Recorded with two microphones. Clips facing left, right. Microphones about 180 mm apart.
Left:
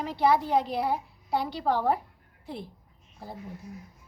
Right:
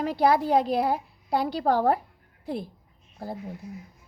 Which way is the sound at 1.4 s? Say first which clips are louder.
Right 6 dB; 40° right (ahead or behind).